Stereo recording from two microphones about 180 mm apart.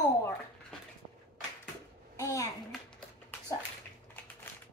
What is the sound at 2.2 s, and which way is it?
Speech, 15° left (ahead or behind).